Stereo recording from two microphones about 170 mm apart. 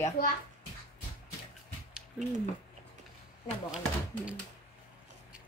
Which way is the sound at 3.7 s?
5° right (ahead or behind).